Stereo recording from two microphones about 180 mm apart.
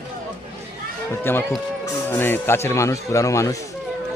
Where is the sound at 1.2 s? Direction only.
10° left (ahead or behind).